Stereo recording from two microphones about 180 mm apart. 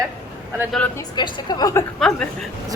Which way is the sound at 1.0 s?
25° left (ahead or behind).